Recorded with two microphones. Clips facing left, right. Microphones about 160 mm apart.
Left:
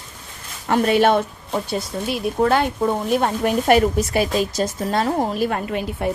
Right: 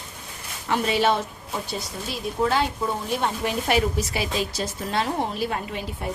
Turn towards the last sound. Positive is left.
turn(degrees=60)  # may be behind; listen again after turning